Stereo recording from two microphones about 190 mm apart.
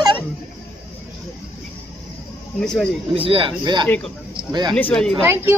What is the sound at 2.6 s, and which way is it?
Speech, 5° left (ahead or behind).